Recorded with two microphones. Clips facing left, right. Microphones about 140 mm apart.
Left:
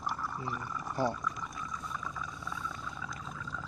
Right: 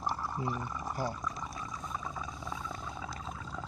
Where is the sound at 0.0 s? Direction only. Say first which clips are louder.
Right 2 dB; 25° right (ahead or behind).